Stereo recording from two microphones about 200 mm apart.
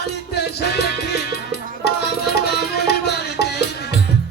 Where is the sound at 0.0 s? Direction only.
55° left (ahead or behind).